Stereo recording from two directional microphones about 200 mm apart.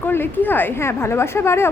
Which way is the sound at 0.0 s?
10° left (ahead or behind).